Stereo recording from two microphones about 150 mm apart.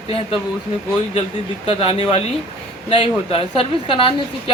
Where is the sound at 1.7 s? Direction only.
40° left (ahead or behind).